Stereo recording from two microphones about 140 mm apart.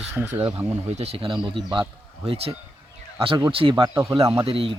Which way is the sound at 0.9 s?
45° right (ahead or behind).